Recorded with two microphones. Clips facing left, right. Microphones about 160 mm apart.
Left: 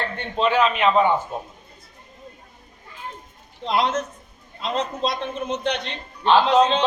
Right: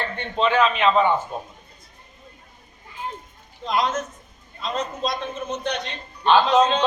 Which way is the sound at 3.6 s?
30° left (ahead or behind).